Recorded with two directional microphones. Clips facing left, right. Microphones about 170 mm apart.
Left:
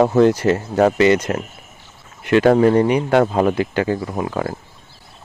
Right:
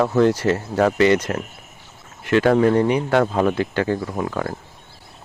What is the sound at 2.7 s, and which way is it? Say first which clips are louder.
Speech: left 3 dB; 15° left (ahead or behind).